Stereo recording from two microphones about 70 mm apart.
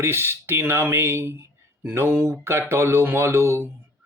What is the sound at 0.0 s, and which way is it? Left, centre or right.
Speech, right.